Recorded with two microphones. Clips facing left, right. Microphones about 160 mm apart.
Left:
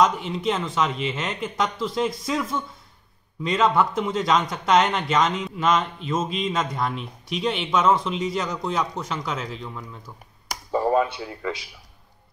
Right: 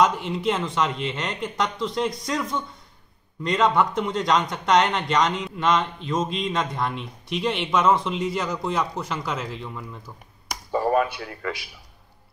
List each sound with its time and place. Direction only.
0.0 s a man's voice: centre (ahead or behind)
10.9 s speech: 25° left (ahead or behind)